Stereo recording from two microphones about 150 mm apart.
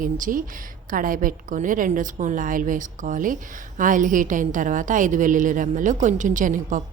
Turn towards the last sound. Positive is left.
turn(degrees=-60)  # may be behind; listen again after turning